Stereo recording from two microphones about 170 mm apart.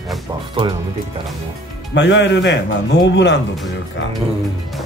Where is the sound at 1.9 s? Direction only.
90° left.